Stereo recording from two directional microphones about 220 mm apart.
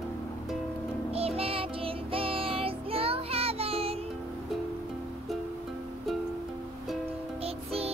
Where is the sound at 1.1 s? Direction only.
25° right (ahead or behind).